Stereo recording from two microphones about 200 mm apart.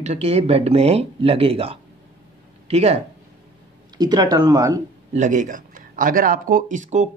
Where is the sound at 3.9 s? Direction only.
20° right (ahead or behind).